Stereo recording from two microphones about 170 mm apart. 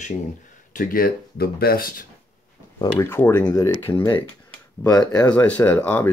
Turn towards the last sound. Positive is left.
turn(degrees=10)  # may be behind; listen again after turning